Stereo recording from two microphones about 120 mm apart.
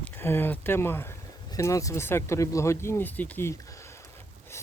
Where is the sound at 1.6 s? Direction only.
25° left (ahead or behind).